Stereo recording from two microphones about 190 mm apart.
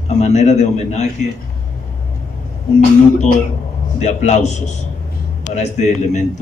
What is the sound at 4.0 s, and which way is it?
A man's voice, 35° left (ahead or behind).